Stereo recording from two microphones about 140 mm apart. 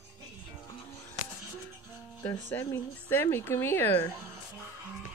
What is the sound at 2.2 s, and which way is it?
Speech, 20° left (ahead or behind).